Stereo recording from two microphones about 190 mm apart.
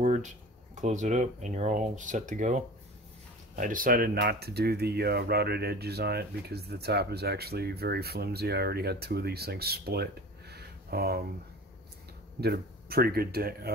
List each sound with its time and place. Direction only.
0.0 s speech: 40° right (ahead or behind); by 11.2 s 55° right (ahead or behind)
12.4 s speech: 55° right (ahead or behind)